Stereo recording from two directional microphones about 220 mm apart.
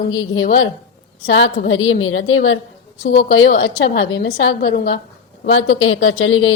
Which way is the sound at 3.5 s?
40° left (ahead or behind).